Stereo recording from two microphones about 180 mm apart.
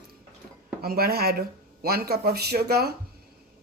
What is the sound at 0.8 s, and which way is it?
Speech, 55° right (ahead or behind).